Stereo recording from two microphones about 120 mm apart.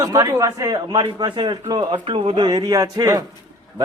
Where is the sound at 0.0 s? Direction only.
30° right (ahead or behind).